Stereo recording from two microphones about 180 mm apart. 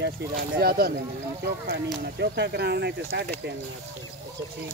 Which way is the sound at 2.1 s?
70° right (ahead or behind).